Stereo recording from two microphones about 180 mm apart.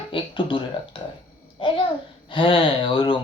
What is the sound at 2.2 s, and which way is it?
Speech, 30° left (ahead or behind).